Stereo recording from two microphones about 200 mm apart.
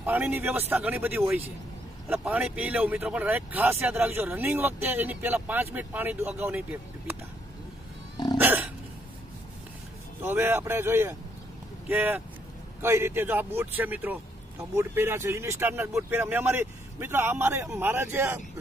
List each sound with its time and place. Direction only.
0.0 s speech: 10° right (ahead or behind)
8.4 s dog: 10° right (ahead or behind)
10.2 s speech: 10° right (ahead or behind)